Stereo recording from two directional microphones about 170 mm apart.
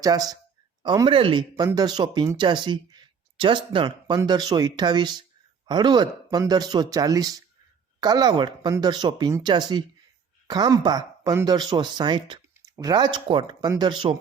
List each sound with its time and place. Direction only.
0.0 s speech: 20° right (ahead or behind)